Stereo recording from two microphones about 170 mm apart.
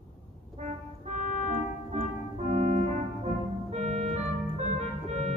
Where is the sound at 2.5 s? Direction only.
40° right (ahead or behind).